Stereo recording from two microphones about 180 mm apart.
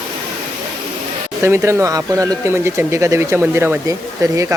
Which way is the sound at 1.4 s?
15° right (ahead or behind).